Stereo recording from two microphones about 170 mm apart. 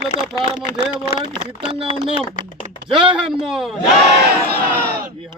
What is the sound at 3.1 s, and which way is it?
Speech, 5° right (ahead or behind).